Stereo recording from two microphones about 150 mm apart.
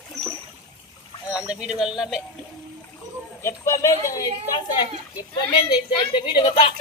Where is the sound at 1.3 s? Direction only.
10° right (ahead or behind).